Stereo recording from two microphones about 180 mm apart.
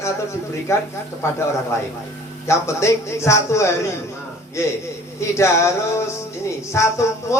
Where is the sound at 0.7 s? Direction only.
15° left (ahead or behind).